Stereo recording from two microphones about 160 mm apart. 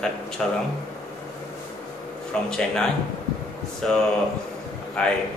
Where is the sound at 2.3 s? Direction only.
5° left (ahead or behind).